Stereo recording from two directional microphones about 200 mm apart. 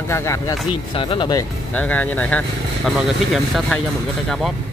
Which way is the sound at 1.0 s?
25° left (ahead or behind).